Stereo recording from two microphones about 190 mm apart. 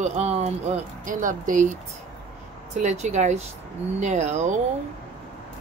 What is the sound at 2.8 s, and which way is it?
A woman's voice, 35° right (ahead or behind).